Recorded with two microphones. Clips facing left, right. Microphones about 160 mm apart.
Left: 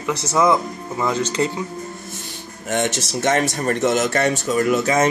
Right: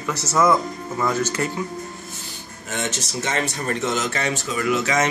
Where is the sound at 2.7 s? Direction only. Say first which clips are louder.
Left 6 dB; 55° left (ahead or behind).